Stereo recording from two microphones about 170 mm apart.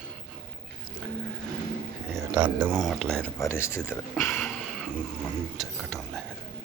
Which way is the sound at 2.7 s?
Centre (ahead or behind).